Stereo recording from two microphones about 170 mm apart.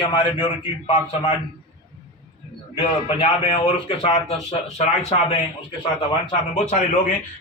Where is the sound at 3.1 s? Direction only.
30° left (ahead or behind).